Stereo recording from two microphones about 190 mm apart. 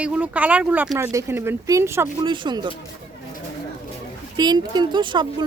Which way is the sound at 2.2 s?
25° right (ahead or behind).